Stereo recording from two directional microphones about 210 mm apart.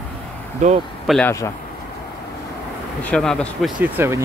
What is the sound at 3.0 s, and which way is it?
Speech, 5° left (ahead or behind).